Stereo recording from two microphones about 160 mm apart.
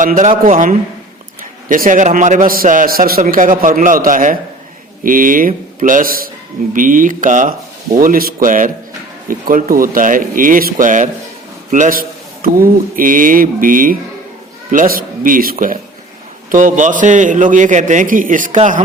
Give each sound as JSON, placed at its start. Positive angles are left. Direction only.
{"t": 0.0, "sound": "a man's voice", "side_deg": -50}